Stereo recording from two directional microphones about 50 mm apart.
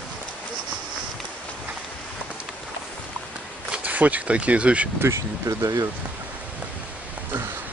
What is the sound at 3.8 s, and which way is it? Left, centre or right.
Speech, right.